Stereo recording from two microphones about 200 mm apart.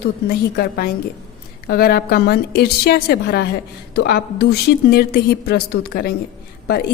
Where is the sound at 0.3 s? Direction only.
50° left (ahead or behind).